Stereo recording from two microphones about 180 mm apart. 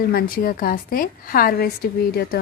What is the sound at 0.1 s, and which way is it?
A woman's voice, 55° left (ahead or behind).